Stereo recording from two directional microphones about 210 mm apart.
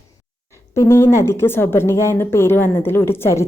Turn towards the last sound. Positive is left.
turn(degrees=10)  # may be behind; listen again after turning